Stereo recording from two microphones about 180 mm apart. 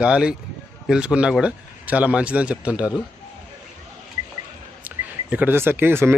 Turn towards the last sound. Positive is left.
turn(degrees=-10)  # may be behind; listen again after turning